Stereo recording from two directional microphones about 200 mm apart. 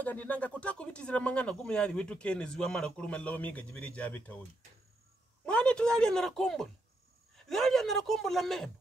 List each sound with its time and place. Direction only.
0.0 s speech: 5° left (ahead or behind)
5.4 s a woman's voice: 5° left (ahead or behind)